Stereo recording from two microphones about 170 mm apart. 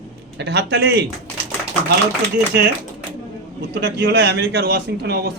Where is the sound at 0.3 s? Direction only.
90° right.